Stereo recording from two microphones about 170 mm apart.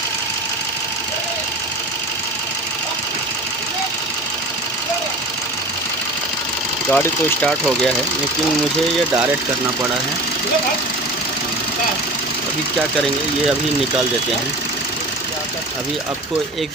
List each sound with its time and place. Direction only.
6.9 s speech: 10° left (ahead or behind)